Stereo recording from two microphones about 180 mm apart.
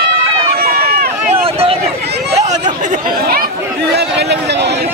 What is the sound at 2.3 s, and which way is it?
Chatter, 40° right (ahead or behind).